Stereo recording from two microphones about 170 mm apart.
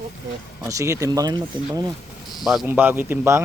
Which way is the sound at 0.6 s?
20° right (ahead or behind).